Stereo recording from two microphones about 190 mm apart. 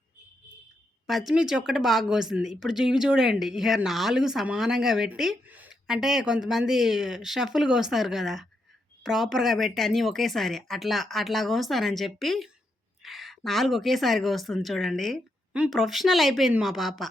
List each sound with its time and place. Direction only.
1.0 s speech: centre (ahead or behind)